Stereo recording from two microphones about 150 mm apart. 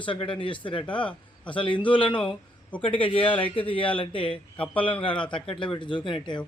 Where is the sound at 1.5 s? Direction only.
35° left (ahead or behind).